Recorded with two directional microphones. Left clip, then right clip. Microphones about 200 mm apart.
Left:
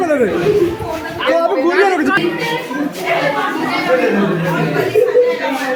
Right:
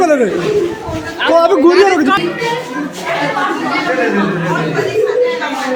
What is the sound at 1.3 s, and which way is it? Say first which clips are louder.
Speech: right 5 dB; 25° right (ahead or behind).